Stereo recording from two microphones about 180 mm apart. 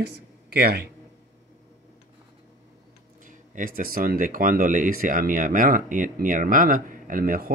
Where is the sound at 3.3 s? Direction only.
50° right (ahead or behind).